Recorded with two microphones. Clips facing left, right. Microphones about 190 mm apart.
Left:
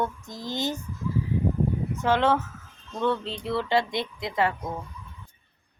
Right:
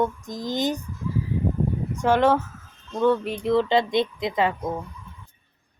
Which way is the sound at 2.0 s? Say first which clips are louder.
Right 4 dB; 15° right (ahead or behind).